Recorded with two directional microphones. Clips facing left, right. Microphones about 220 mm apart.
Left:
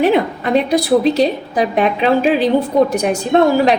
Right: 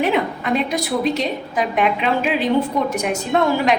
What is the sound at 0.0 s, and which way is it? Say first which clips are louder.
A woman's voice: left 5 dB; 35° left (ahead or behind).